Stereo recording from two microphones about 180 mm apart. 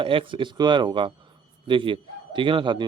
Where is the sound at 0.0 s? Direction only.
30° right (ahead or behind).